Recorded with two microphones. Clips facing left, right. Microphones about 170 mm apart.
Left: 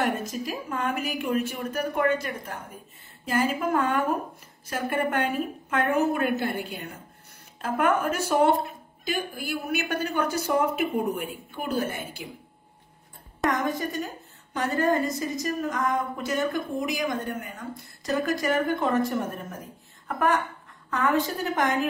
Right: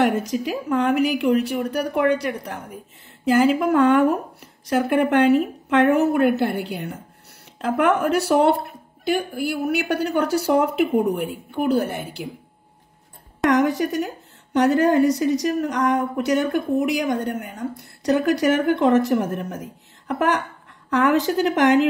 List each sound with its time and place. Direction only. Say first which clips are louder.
0.0 s a woman's voice: right 7 dB; 75° right (ahead or behind)
13.5 s a woman's voice: right 9 dB; 80° right